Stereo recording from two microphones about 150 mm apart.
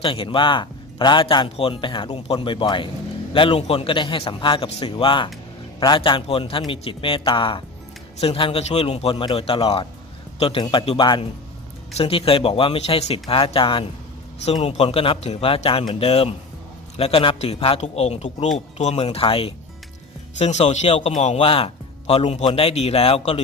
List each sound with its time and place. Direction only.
0.0 s a man's voice: 35° left (ahead or behind)
14.4 s a man's voice: 45° left (ahead or behind)